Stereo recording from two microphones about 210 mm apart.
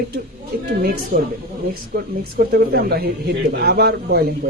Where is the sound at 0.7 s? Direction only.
45° right (ahead or behind).